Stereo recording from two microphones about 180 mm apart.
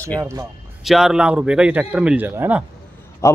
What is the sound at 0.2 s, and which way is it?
Speech, 15° right (ahead or behind).